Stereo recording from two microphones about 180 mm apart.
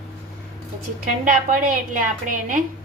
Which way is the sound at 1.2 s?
50° right (ahead or behind).